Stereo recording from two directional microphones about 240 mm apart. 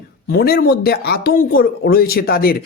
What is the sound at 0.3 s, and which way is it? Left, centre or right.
Speech, left.